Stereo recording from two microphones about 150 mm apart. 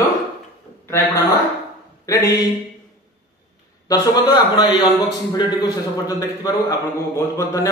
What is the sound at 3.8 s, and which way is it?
A man's voice, 25° left (ahead or behind).